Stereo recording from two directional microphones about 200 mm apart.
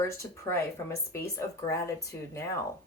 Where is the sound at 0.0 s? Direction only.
15° left (ahead or behind).